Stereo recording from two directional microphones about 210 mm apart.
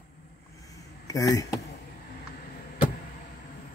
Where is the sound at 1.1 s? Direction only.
15° left (ahead or behind).